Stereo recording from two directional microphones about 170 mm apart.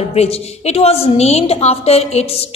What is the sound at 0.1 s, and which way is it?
A woman's voice, 40° left (ahead or behind).